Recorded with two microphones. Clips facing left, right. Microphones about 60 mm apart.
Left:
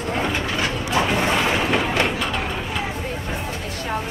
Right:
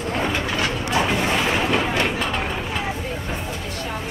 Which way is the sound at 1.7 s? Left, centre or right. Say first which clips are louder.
Even; left.